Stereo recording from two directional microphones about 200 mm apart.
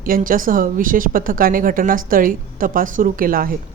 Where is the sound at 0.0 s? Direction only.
45° right (ahead or behind).